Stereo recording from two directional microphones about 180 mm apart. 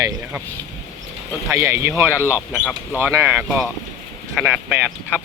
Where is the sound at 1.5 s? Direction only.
15° right (ahead or behind).